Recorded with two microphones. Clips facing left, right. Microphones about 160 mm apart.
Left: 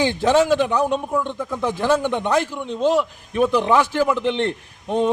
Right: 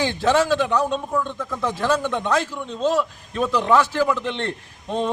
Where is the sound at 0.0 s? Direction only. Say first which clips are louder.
Left 2 dB; 15° left (ahead or behind).